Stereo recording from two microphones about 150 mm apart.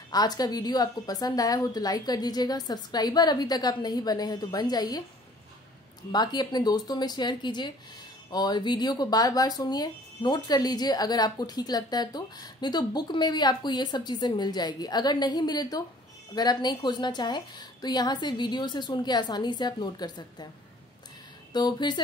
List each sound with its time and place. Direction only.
0.1 s speech: 25° left (ahead or behind)
6.1 s speech: 30° left (ahead or behind)
21.5 s speech: 30° left (ahead or behind)